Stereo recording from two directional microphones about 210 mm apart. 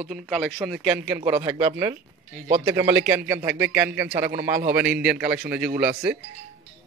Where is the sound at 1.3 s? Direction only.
25° right (ahead or behind).